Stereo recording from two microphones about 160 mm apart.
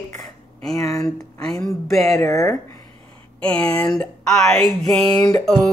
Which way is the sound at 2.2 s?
20° left (ahead or behind).